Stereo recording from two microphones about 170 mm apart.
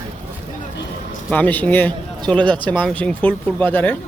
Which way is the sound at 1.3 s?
10° left (ahead or behind).